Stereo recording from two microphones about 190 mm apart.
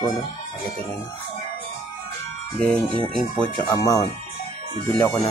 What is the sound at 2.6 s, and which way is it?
Speech, 5° left (ahead or behind).